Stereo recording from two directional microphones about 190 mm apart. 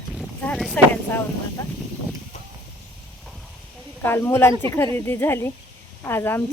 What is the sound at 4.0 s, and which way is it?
Speech, 10° left (ahead or behind).